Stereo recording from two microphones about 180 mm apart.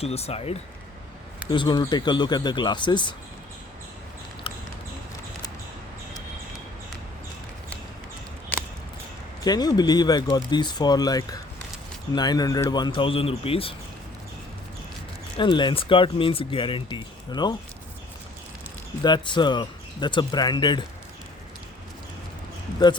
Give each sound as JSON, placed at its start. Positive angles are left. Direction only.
{"t": 0.0, "sound": "speech", "side_deg": 35}
{"t": 8.5, "sound": "a sound", "side_deg": 10}
{"t": 9.4, "sound": "speech", "side_deg": 20}
{"t": 15.4, "sound": "speech", "side_deg": 25}
{"t": 19.0, "sound": "speech", "side_deg": 25}